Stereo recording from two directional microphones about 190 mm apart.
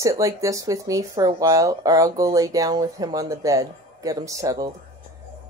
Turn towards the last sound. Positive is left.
turn(degrees=-20)  # may be behind; listen again after turning